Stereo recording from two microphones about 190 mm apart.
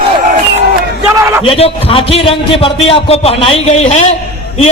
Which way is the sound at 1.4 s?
30° left (ahead or behind).